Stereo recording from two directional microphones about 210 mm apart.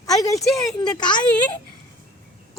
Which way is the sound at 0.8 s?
20° left (ahead or behind).